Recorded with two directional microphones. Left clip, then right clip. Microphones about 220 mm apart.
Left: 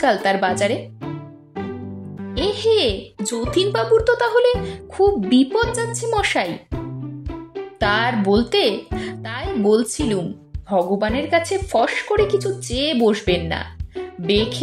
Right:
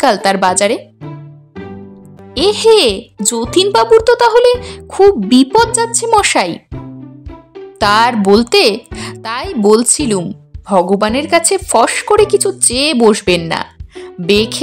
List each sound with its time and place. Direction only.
0.0 s speech: 25° right (ahead or behind)
2.3 s speech: 30° right (ahead or behind)
7.8 s speech: 30° right (ahead or behind)